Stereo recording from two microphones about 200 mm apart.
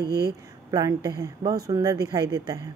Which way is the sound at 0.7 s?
20° right (ahead or behind).